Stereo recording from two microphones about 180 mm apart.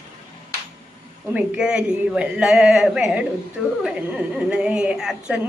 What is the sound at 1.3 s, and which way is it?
A woman's voice, 5° right (ahead or behind).